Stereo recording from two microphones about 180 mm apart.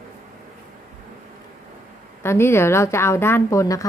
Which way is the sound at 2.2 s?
15° left (ahead or behind).